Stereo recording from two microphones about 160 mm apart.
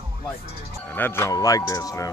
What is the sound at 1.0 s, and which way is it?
Speech, 15° left (ahead or behind).